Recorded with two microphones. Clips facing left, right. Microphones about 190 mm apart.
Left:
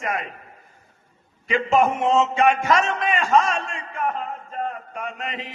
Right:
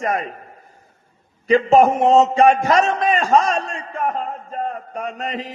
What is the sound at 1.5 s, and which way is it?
A man's voice, 40° right (ahead or behind).